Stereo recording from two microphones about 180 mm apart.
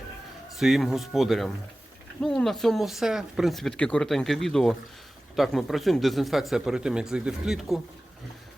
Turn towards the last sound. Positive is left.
turn(degrees=0)  # may be behind; listen again after turning